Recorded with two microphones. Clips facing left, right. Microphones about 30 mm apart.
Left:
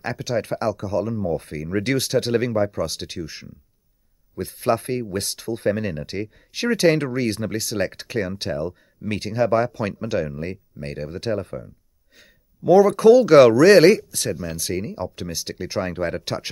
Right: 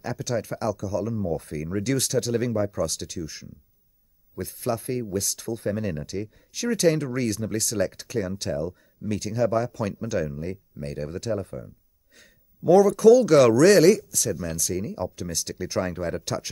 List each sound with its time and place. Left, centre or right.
0.4 s speech: left
7.5 s speech: left
7.8 s speech: left
12.2 s a sound: left
12.8 s speech: left